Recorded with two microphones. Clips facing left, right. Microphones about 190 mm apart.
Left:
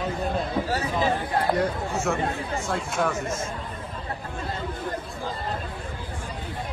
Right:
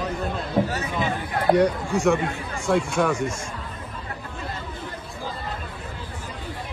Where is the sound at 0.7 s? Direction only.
25° left (ahead or behind).